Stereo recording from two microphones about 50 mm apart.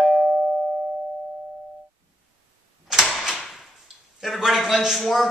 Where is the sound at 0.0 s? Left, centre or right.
Centre.